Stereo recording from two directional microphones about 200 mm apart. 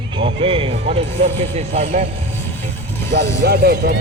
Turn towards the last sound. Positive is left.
turn(degrees=-50)  # may be behind; listen again after turning